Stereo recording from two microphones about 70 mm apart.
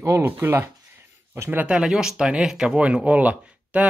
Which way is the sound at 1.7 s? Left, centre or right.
Centre.